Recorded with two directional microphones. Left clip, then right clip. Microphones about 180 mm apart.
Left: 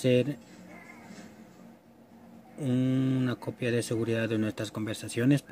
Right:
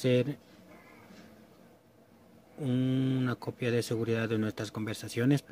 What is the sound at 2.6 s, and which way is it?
Speech, 10° right (ahead or behind).